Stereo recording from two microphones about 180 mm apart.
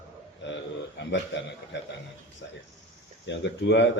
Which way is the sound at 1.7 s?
75° left (ahead or behind).